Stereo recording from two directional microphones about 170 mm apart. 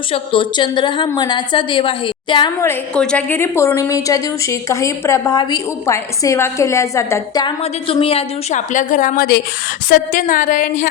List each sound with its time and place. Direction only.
0.1 s a woman's voice: 30° left (ahead or behind)
2.6 s a woman's voice: 15° left (ahead or behind)
7.6 s a woman's voice: 35° left (ahead or behind); by 10.8 s 50° left (ahead or behind)